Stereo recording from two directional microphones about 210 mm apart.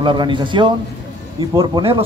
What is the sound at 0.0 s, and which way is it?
Speech, 20° right (ahead or behind).